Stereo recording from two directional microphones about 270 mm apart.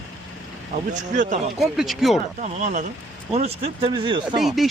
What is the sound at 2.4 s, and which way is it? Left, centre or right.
Speech, right.